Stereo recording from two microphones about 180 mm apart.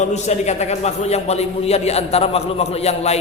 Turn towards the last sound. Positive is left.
turn(degrees=35)  # may be behind; listen again after turning